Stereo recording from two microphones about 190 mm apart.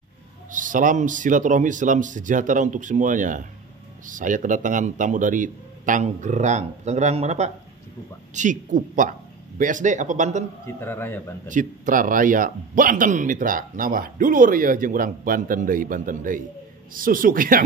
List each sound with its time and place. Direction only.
0.5 s a man's voice: 45° right (ahead or behind)
10.8 s a man's voice: 10° left (ahead or behind)
11.4 s a man's voice: 45° right (ahead or behind)